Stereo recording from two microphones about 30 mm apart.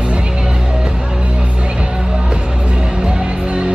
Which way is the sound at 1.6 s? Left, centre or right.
Right.